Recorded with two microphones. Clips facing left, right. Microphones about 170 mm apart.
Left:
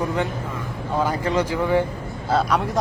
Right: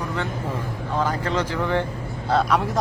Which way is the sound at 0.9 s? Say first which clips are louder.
Left 2 dB; 10° left (ahead or behind).